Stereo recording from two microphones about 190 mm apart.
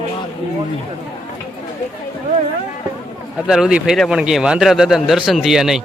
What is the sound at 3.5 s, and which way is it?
Speech, 5° right (ahead or behind).